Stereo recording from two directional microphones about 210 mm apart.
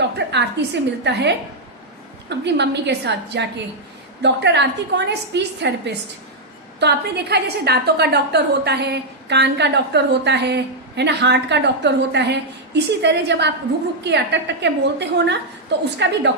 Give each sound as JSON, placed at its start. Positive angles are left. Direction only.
{"t": 0.2, "sound": "a woman's voice", "side_deg": -55}